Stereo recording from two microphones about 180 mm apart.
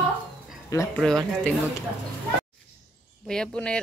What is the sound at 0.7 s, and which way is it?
Speech, 20° left (ahead or behind).